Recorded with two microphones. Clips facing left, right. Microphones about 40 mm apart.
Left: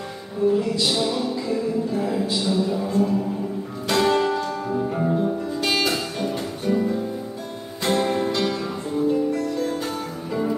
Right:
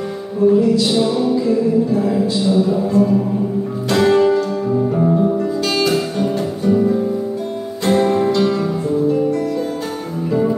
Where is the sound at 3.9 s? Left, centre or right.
Centre.